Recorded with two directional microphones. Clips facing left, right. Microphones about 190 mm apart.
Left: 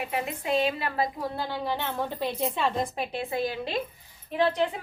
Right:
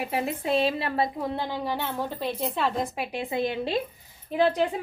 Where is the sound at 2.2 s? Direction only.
Centre (ahead or behind); by 3.7 s 25° right (ahead or behind).